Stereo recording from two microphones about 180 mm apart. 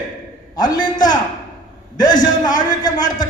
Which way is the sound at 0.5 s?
25° left (ahead or behind).